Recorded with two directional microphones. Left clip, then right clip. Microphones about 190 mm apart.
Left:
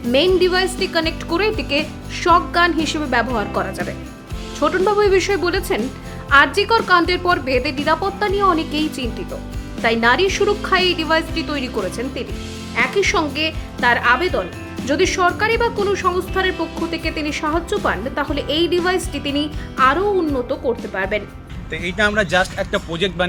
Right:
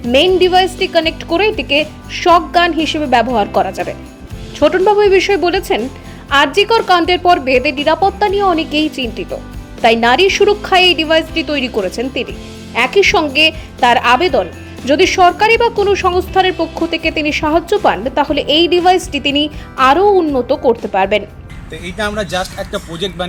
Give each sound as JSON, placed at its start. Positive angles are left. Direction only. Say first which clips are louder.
{"t": 0.1, "sound": "a woman's voice", "louder": "right 5 dB", "side_deg": -15}
{"t": 21.8, "sound": "speech", "louder": "left 1 dB", "side_deg": 0}